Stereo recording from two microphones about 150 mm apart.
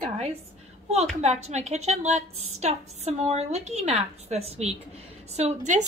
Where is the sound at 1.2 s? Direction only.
50° right (ahead or behind).